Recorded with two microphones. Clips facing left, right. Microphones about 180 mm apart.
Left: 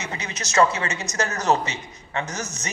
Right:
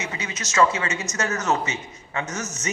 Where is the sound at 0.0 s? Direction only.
35° left (ahead or behind).